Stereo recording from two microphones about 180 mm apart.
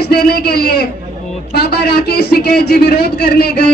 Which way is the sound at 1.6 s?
60° left (ahead or behind).